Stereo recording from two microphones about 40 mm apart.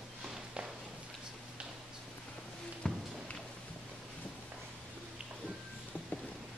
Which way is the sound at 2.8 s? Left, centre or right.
Left.